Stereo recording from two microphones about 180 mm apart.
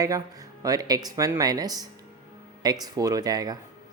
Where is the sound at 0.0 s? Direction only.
20° right (ahead or behind).